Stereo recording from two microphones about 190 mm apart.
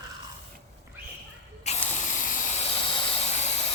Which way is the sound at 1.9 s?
40° left (ahead or behind).